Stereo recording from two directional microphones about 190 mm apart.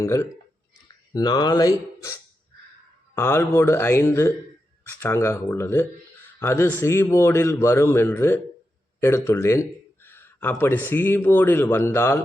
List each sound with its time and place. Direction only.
0.0 s speech: 15° left (ahead or behind)
3.2 s speech: 15° left (ahead or behind)